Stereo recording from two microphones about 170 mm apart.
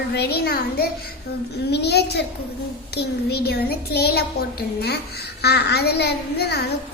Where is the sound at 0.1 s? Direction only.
70° left (ahead or behind).